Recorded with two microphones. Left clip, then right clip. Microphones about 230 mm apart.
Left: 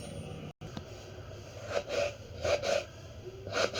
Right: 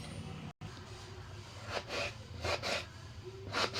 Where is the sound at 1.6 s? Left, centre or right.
Right.